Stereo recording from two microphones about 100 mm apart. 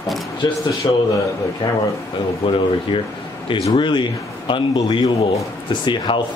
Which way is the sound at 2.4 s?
60° left (ahead or behind).